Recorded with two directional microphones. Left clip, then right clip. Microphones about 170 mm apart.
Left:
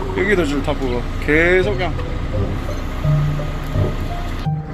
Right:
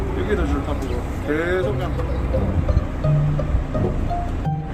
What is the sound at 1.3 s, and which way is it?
Speech, 30° left (ahead or behind).